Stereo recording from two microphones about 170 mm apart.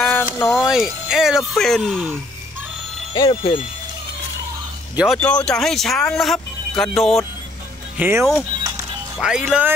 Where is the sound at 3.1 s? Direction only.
25° left (ahead or behind).